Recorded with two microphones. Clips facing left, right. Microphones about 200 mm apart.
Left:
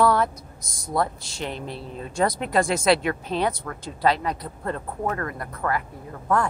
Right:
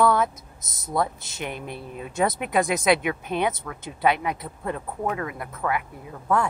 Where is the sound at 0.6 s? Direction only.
20° right (ahead or behind).